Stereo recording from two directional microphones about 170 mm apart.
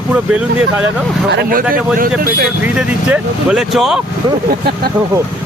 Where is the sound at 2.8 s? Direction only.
5° right (ahead or behind).